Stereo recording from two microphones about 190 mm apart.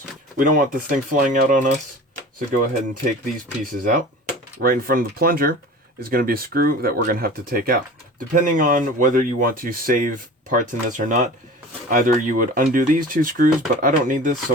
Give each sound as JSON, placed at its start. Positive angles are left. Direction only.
{"t": 0.3, "sound": "speech", "side_deg": -45}